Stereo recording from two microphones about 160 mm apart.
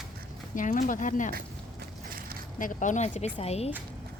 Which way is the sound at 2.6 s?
55° left (ahead or behind).